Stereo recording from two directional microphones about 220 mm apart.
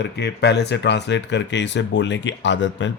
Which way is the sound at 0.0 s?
50° left (ahead or behind).